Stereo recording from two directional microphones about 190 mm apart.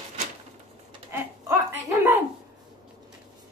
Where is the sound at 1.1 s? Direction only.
15° right (ahead or behind).